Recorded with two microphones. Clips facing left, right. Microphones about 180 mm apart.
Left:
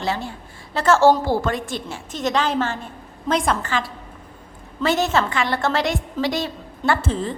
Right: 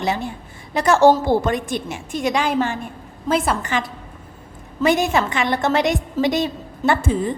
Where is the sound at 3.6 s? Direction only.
20° right (ahead or behind).